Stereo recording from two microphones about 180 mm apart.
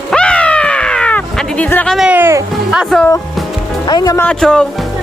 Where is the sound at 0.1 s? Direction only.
5° left (ahead or behind); by 2.8 s 10° right (ahead or behind).